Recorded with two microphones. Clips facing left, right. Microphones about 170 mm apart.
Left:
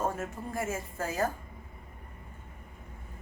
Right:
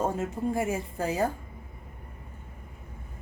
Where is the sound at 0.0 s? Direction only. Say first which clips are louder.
Right 5 dB; 20° right (ahead or behind).